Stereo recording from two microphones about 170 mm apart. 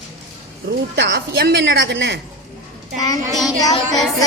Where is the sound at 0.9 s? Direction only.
80° right.